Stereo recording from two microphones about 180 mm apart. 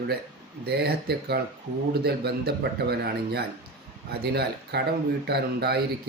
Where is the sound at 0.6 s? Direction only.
65° right (ahead or behind).